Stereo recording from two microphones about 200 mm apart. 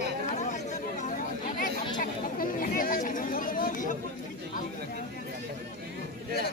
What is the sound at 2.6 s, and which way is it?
Chatter, 45° left (ahead or behind).